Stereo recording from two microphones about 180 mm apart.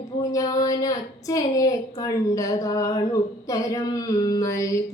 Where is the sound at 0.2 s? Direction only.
20° left (ahead or behind).